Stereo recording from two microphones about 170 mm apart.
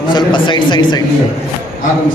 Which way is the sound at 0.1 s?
25° left (ahead or behind).